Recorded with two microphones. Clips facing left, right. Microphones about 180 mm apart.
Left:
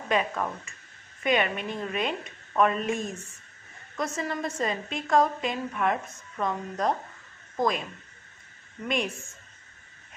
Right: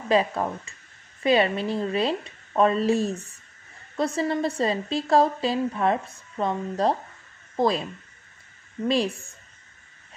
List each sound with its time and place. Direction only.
0.1 s a woman's voice: 30° right (ahead or behind)
8.8 s a woman's voice: 35° right (ahead or behind)